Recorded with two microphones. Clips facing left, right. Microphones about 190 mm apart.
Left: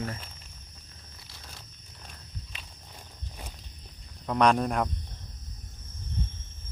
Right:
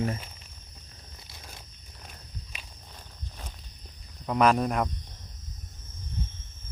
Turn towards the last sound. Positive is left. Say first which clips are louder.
# even
turn(degrees=0)  # may be behind; listen again after turning